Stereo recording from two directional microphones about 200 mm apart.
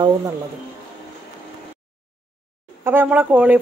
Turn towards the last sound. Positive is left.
turn(degrees=-10)  # may be behind; listen again after turning